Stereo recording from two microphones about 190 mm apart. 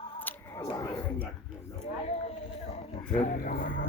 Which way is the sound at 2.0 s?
35° left (ahead or behind).